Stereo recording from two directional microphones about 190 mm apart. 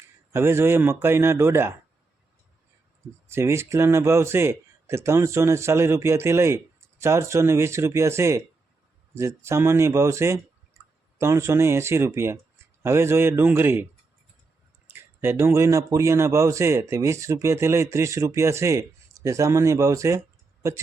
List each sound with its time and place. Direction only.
0.3 s speech: 15° right (ahead or behind)
3.2 s speech: 15° right (ahead or behind)
14.9 s speech: 10° right (ahead or behind)